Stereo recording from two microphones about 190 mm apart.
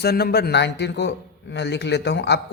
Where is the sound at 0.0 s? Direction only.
55° left (ahead or behind).